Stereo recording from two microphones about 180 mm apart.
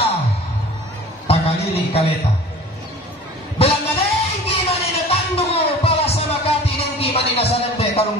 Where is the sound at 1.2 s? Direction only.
35° left (ahead or behind).